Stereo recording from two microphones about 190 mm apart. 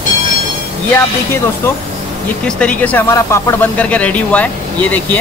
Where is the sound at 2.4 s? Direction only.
5° left (ahead or behind).